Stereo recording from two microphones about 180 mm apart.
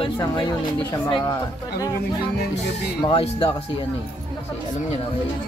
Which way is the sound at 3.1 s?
30° left (ahead or behind).